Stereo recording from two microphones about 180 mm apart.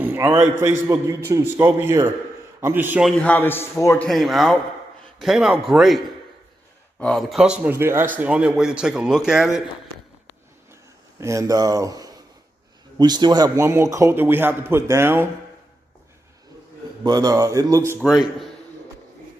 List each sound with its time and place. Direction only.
0.0 s a man's voice: 10° right (ahead or behind)
3.1 s a man's voice: 5° left (ahead or behind)
4.1 s a man's voice: centre (ahead or behind)
10.7 s a sound: 15° right (ahead or behind)
12.9 s a man's voice: 25° right (ahead or behind)
17.0 s a man's voice: 20° right (ahead or behind)